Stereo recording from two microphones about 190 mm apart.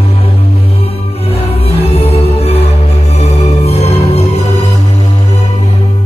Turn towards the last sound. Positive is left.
turn(degrees=35)  # may be behind; listen again after turning